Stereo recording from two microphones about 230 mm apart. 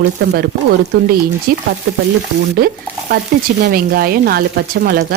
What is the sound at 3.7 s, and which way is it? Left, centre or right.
Speech, right.